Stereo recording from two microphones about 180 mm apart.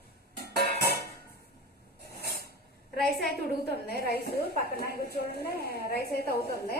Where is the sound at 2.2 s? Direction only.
60° left (ahead or behind).